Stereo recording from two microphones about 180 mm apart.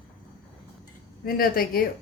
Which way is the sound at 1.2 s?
55° left (ahead or behind).